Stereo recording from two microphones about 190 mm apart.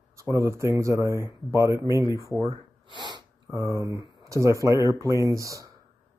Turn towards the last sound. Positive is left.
turn(degrees=-15)  # may be behind; listen again after turning